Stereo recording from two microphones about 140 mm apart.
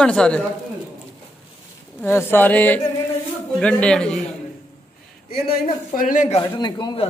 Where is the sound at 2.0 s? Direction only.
15° left (ahead or behind).